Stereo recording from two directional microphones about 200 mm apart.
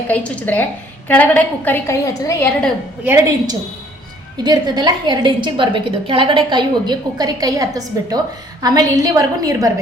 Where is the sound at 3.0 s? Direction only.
10° right (ahead or behind).